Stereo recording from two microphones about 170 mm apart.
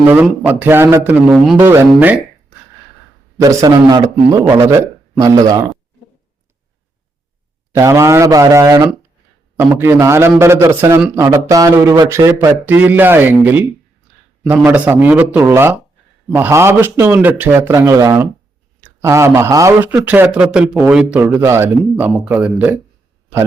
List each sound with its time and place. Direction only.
0.1 s speech: 10° right (ahead or behind)
3.4 s a man's voice: 20° right (ahead or behind)
7.7 s speech: 15° right (ahead or behind)
12.6 s speech: 10° right (ahead or behind)